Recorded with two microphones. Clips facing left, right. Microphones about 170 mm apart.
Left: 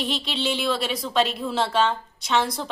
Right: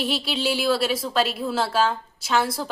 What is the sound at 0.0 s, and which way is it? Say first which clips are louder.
A woman's voice: right 2 dB; 5° right (ahead or behind).